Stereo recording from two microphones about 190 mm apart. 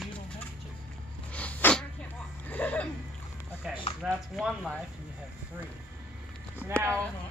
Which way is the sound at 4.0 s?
Centre (ahead or behind).